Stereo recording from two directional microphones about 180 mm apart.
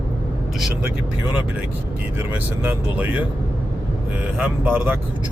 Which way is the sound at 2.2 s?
10° right (ahead or behind).